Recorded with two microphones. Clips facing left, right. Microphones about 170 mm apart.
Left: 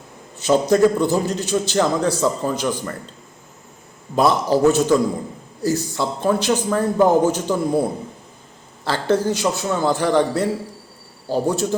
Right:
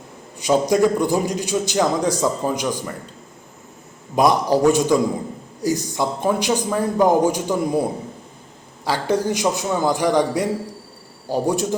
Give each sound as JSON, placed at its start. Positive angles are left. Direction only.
{"t": 0.3, "sound": "a man's voice", "side_deg": -15}
{"t": 4.1, "sound": "a man's voice", "side_deg": -15}
{"t": 8.8, "sound": "a man's voice", "side_deg": -10}